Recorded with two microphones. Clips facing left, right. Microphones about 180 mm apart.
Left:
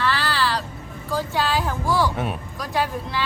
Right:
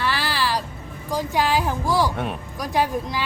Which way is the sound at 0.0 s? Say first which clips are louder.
Left 1 dB; 10° right (ahead or behind).